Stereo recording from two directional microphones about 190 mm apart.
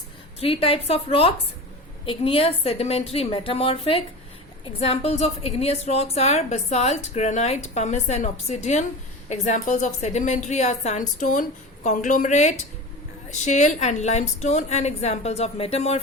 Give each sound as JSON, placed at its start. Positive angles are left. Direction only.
{"t": 0.3, "sound": "a woman's voice", "side_deg": 30}